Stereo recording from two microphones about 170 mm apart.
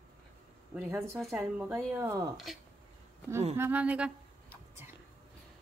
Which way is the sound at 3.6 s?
10° right (ahead or behind).